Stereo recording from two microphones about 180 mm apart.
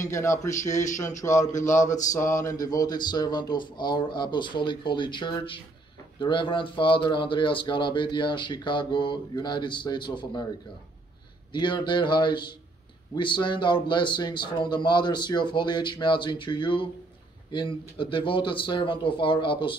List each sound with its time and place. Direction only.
0.1 s speech: 15° left (ahead or behind)
1.5 s speech: 45° left (ahead or behind)
1.8 s speech: 15° left (ahead or behind)
11.5 s speech: 25° left (ahead or behind)